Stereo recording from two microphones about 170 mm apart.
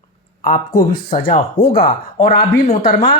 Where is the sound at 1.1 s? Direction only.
55° left (ahead or behind).